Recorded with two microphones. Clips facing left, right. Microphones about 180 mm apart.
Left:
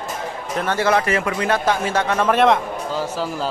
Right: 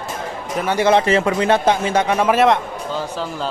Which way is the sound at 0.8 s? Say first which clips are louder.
Right 5 dB; 25° right (ahead or behind).